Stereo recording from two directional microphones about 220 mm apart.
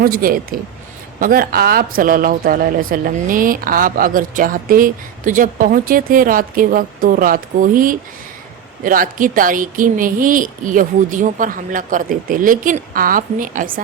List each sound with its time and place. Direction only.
0.0 s a man's voice: 40° right (ahead or behind)